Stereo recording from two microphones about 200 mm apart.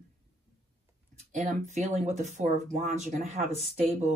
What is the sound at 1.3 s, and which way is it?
Speech, 40° right (ahead or behind).